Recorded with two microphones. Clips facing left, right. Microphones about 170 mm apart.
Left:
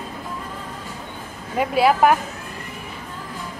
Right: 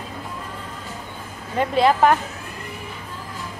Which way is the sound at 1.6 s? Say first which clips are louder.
Even; 10° left (ahead or behind).